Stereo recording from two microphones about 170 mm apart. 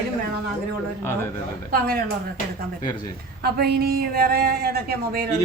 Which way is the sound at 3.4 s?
70° right (ahead or behind).